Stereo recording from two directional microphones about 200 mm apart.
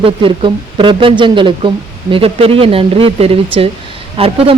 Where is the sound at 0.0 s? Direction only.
25° right (ahead or behind).